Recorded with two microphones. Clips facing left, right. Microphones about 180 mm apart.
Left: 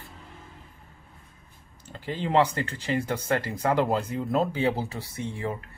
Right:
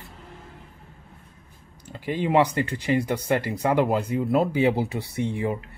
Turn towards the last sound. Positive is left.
turn(degrees=-15)  # may be behind; listen again after turning